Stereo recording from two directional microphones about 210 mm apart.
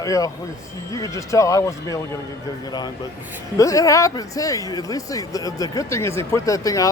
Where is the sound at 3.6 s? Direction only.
15° left (ahead or behind).